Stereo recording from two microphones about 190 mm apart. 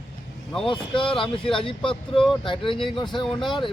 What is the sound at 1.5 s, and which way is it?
Speech, 25° left (ahead or behind).